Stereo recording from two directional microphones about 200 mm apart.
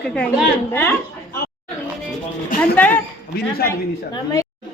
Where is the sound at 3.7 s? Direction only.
15° left (ahead or behind).